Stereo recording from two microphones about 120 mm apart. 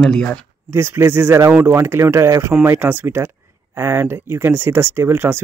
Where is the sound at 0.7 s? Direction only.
20° right (ahead or behind).